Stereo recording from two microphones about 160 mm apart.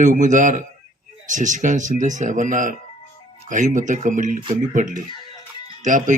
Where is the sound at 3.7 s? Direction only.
50° right (ahead or behind).